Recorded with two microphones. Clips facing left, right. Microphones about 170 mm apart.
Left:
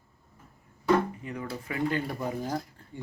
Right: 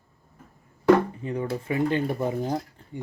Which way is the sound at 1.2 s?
30° right (ahead or behind).